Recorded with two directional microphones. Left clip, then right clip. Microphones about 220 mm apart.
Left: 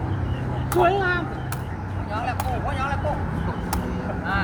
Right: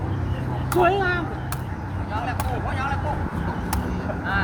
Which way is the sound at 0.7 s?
10° left (ahead or behind).